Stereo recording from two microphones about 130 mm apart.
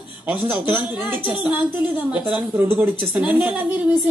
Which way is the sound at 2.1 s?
10° right (ahead or behind).